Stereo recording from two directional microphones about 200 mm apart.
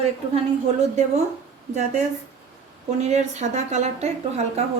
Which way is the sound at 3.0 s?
35° right (ahead or behind).